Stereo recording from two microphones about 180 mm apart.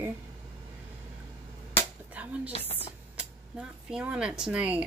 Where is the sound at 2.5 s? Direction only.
35° left (ahead or behind).